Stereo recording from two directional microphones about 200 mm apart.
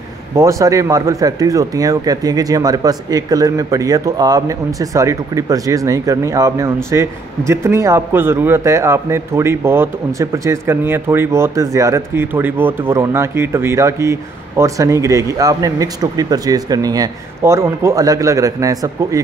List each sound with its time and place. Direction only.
0.4 s speech: 15° right (ahead or behind)